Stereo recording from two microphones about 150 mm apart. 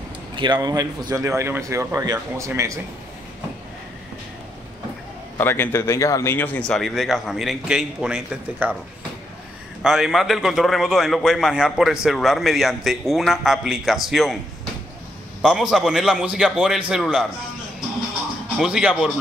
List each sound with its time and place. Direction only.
0.4 s speech: 25° right (ahead or behind)
5.4 s a man's voice: 15° left (ahead or behind); by 8.7 s 10° right (ahead or behind)
9.8 s a man's voice: centre (ahead or behind)
15.4 s a man's voice: 5° right (ahead or behind)
18.6 s a man's voice: 5° right (ahead or behind)